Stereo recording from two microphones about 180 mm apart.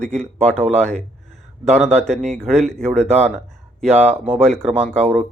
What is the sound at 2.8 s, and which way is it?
Speech, 40° right (ahead or behind).